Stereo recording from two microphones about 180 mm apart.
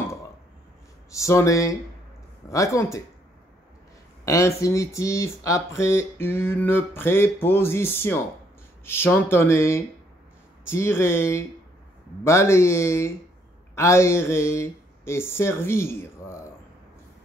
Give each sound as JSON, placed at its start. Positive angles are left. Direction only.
{"t": 1.1, "sound": "speech", "side_deg": 15}
{"t": 4.2, "sound": "speech", "side_deg": 15}